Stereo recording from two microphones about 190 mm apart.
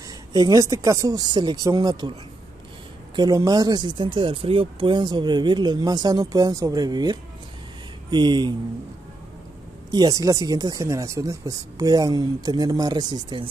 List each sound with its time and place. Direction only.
0.3 s speech: 20° right (ahead or behind)
3.2 s speech: 20° right (ahead or behind)
9.8 s speech: 20° right (ahead or behind)